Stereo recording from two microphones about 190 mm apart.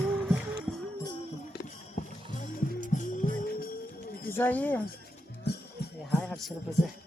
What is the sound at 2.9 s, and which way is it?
Music, 45° left (ahead or behind).